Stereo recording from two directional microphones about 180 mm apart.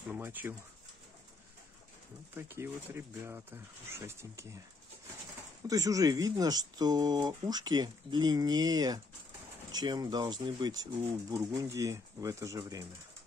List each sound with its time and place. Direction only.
0.1 s speech: 10° right (ahead or behind)
2.5 s speech: 15° right (ahead or behind)
5.7 s speech: 20° right (ahead or behind)